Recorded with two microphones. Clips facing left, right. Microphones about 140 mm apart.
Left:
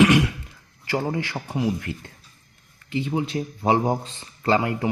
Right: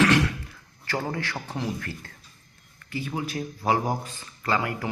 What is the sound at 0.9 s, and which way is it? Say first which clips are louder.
Speech: left 4 dB; 20° left (ahead or behind).